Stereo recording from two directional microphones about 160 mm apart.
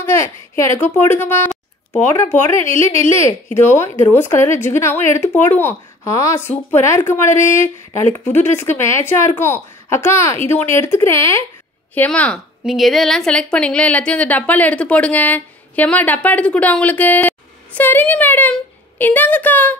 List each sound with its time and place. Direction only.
0.0 s a woman's voice: 15° left (ahead or behind)
1.5 s a sound: 5° left (ahead or behind)
2.6 s a woman's voice: 15° left (ahead or behind)